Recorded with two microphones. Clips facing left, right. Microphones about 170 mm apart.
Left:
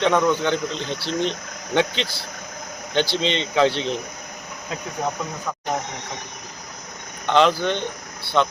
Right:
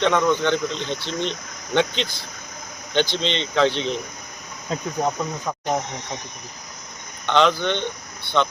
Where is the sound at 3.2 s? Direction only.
5° left (ahead or behind).